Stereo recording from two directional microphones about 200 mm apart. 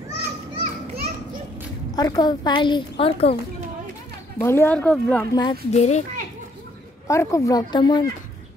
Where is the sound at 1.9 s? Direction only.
20° left (ahead or behind).